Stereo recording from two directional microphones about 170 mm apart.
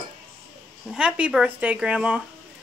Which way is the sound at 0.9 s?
5° right (ahead or behind).